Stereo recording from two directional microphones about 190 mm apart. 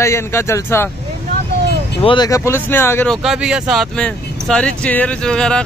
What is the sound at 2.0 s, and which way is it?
Speech, 25° left (ahead or behind).